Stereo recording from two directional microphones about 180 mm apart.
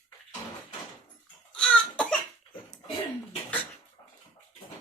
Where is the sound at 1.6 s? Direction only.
5° left (ahead or behind).